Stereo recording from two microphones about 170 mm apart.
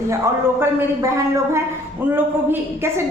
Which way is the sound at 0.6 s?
15° right (ahead or behind).